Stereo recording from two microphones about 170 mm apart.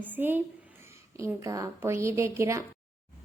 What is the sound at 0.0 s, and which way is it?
A woman's voice, 10° right (ahead or behind).